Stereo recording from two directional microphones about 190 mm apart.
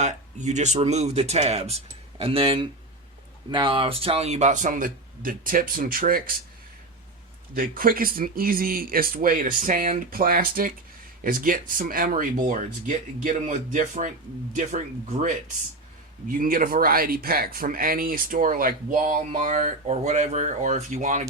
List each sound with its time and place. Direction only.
0.0 s speech: 40° right (ahead or behind)
7.5 s speech: 50° right (ahead or behind)
16.4 s speech: 50° right (ahead or behind)